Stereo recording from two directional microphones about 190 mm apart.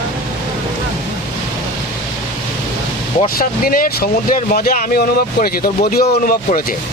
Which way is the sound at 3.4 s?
50° left (ahead or behind).